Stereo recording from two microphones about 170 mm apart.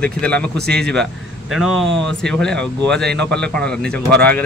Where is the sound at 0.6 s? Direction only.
70° right (ahead or behind).